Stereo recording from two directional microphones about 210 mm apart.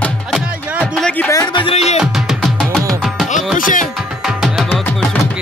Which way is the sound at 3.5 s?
40° left (ahead or behind).